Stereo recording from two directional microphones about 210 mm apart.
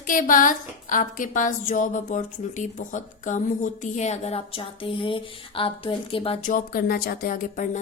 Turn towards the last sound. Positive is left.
turn(degrees=40)  # may be behind; listen again after turning